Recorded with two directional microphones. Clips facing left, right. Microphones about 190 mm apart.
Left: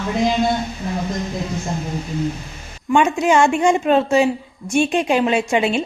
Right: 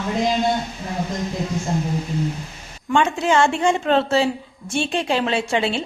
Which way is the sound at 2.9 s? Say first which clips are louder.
Left 3 dB; 15° left (ahead or behind).